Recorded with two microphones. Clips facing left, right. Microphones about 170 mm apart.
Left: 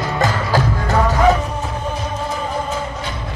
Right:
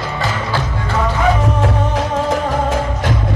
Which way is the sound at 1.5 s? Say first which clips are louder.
Right 7 dB; 90° right.